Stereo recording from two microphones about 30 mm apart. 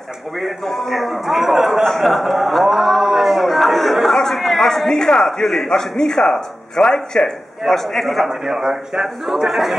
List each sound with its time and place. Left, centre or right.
0.7 s speech: centre
2.8 s a sound: centre
4.2 s speech: centre
4.9 s speech: left
7.6 s speech: centre
8.3 s a man's voice: centre